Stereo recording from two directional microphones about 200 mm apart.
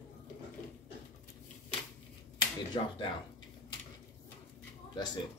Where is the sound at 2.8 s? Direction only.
20° left (ahead or behind).